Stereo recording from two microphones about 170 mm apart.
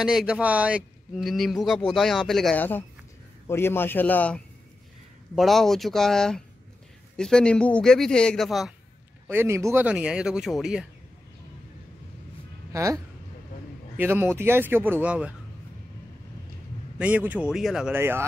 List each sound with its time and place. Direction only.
0.0 s a man's voice: 5° right (ahead or behind)
9.3 s a man's voice: 15° right (ahead or behind)
12.7 s speech: 20° right (ahead or behind)
17.0 s speech: 10° right (ahead or behind)